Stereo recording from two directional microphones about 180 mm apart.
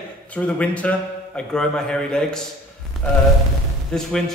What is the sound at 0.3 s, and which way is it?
Speech, 5° left (ahead or behind).